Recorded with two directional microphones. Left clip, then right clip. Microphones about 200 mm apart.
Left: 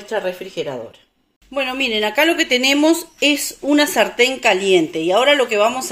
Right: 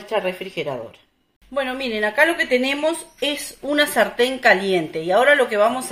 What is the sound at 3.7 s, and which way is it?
A woman's voice, 30° left (ahead or behind).